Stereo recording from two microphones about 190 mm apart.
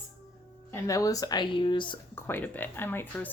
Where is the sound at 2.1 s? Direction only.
10° left (ahead or behind).